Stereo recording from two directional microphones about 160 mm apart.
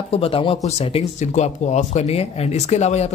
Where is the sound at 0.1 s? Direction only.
35° left (ahead or behind).